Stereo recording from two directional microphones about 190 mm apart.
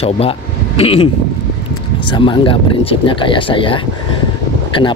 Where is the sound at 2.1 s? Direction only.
25° left (ahead or behind).